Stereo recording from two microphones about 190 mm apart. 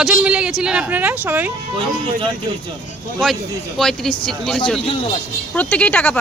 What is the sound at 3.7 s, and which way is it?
A woman's voice, centre (ahead or behind).